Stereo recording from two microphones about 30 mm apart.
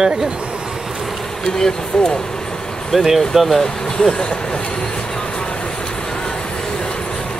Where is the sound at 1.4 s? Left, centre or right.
Left.